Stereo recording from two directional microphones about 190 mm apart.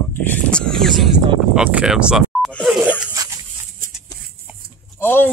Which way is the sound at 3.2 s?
20° right (ahead or behind).